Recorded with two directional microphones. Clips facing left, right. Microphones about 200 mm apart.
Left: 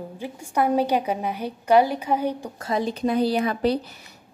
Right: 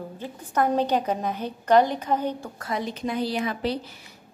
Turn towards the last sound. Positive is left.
turn(degrees=35)  # may be behind; listen again after turning